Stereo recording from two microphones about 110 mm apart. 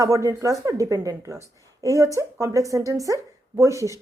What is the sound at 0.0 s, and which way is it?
A woman's voice, 30° right (ahead or behind).